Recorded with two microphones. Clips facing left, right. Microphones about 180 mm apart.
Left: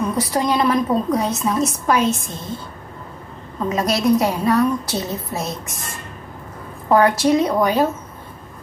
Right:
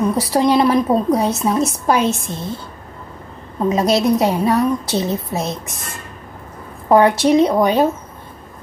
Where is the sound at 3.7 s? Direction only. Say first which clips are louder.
Right 2 dB; 25° right (ahead or behind).